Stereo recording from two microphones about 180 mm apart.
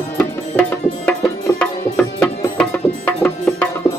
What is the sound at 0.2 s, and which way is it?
Music, 10° left (ahead or behind).